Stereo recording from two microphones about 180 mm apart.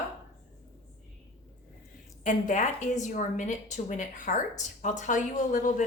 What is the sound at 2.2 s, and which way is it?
A woman's voice, 45° left (ahead or behind).